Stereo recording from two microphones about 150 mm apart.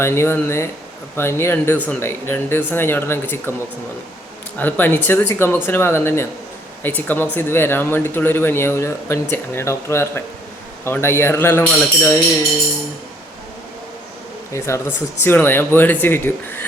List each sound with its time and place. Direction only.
0.0 s speech: 15° left (ahead or behind)
4.5 s speech: 10° left (ahead or behind)
14.5 s speech: 15° left (ahead or behind)